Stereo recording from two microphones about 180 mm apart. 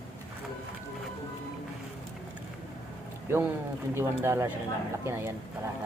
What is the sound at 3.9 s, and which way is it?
Speech, 15° right (ahead or behind).